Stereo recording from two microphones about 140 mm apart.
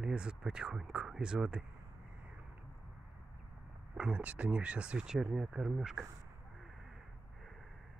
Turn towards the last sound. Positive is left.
turn(degrees=0)  # may be behind; listen again after turning